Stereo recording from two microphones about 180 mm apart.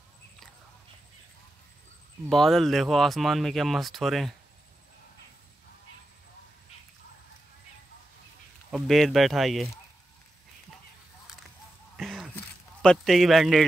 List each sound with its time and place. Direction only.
2.2 s speech: centre (ahead or behind)
8.7 s speech: centre (ahead or behind)
12.0 s a sound: centre (ahead or behind)
12.4 s speech: 5° left (ahead or behind)